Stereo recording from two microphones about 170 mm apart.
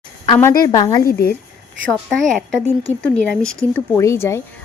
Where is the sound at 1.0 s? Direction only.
60° left (ahead or behind).